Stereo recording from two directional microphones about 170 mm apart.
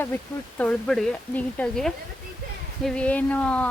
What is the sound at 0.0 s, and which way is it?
Speech, 10° left (ahead or behind).